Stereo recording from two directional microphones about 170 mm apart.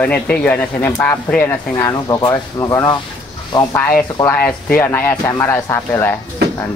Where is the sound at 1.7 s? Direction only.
20° left (ahead or behind).